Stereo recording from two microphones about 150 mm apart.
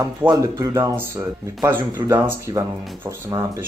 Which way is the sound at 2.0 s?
15° right (ahead or behind).